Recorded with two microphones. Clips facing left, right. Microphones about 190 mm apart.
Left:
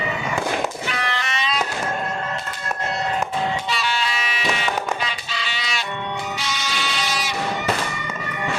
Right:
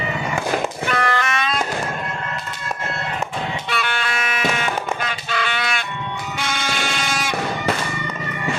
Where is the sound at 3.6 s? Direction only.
55° right (ahead or behind).